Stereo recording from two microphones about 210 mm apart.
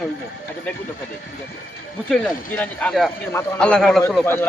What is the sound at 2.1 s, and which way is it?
Speech, 5° left (ahead or behind).